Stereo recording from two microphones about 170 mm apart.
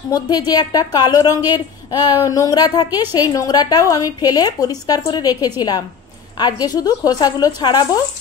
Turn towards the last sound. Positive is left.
turn(degrees=25)  # may be behind; listen again after turning